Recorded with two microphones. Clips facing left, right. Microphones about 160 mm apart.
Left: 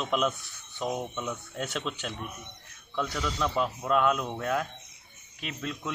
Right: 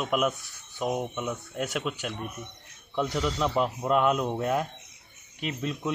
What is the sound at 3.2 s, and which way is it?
Speech, 15° right (ahead or behind).